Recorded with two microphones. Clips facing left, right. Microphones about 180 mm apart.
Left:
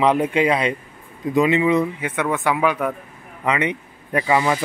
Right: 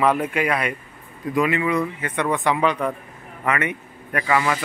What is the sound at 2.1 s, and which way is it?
Speech, 5° left (ahead or behind).